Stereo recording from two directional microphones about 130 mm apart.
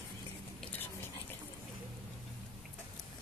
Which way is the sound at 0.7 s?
15° left (ahead or behind).